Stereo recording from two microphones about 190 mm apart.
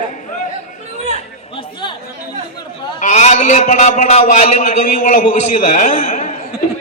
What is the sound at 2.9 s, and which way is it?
A man's voice, 40° left (ahead or behind).